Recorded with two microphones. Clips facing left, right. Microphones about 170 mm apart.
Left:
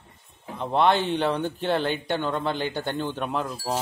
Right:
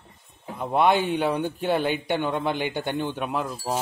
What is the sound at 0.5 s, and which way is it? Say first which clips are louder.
Speech: right 1 dB; 10° right (ahead or behind).